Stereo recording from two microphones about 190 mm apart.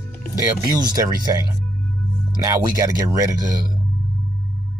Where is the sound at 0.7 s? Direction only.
20° right (ahead or behind).